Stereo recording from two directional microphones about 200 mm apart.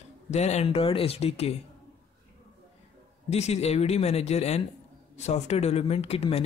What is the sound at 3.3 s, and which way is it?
Speech, 30° left (ahead or behind).